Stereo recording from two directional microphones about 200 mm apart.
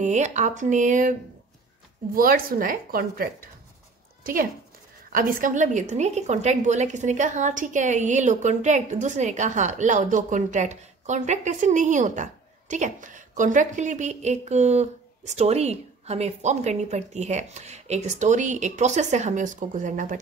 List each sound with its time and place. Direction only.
0.0 s a woman's voice: 35° right (ahead or behind)
2.1 s a woman's voice: 45° right (ahead or behind)